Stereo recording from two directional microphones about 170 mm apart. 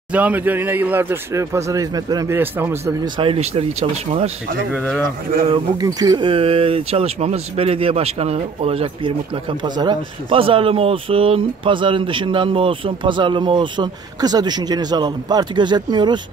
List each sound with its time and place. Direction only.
0.1 s speech: 10° right (ahead or behind)
3.2 s speech: 35° right (ahead or behind)
4.7 s speech: 5° left (ahead or behind)
5.5 s speech: 20° right (ahead or behind)